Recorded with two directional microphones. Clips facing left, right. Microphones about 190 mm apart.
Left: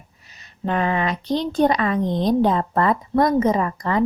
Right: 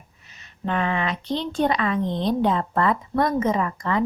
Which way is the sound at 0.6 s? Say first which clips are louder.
Left 3 dB; 40° left (ahead or behind).